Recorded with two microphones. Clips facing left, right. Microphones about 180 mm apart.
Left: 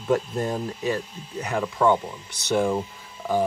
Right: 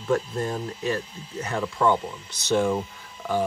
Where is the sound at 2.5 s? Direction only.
15° left (ahead or behind).